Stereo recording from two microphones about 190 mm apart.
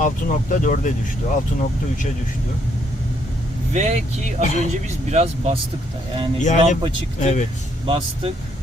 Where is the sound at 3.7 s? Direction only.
35° right (ahead or behind).